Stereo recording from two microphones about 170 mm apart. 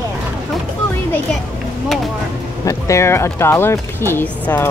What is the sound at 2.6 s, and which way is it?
Speech, 20° left (ahead or behind).